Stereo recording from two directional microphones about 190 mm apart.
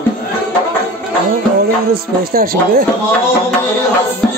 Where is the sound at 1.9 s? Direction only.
50° right (ahead or behind).